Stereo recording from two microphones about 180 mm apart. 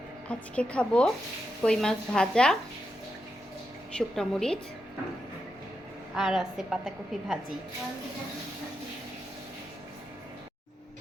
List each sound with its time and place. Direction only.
0.3 s a woman's voice: 5° left (ahead or behind)
3.9 s a woman's voice: 5° left (ahead or behind)
6.1 s a woman's voice: centre (ahead or behind)